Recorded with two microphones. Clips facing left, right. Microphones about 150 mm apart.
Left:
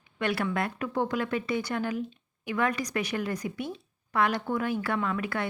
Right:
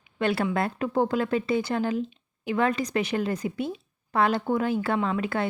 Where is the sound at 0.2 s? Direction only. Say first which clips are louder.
Right 4 dB; 30° right (ahead or behind).